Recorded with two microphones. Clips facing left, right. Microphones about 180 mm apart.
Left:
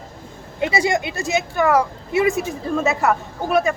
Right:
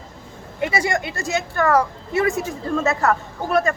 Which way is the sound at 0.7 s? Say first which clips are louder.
Left 3 dB; 15° left (ahead or behind).